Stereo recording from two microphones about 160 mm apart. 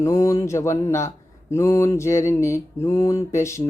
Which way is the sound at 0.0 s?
20° left (ahead or behind).